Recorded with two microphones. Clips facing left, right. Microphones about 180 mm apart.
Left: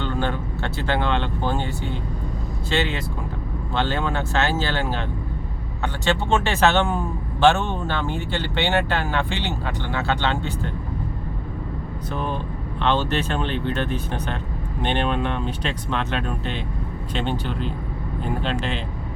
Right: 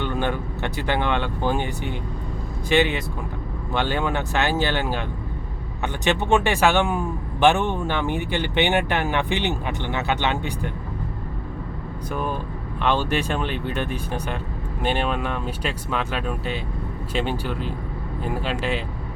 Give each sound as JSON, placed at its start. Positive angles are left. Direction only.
{"t": 0.0, "sound": "speech", "side_deg": -15}
{"t": 12.1, "sound": "speech", "side_deg": -10}